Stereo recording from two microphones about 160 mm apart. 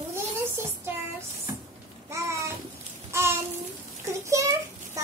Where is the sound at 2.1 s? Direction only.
20° right (ahead or behind).